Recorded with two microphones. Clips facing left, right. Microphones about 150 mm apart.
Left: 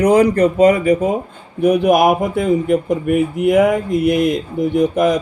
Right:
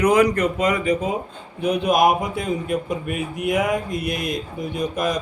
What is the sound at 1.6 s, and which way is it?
Speech, 55° left (ahead or behind).